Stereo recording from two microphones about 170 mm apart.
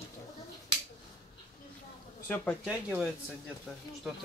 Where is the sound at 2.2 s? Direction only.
10° left (ahead or behind).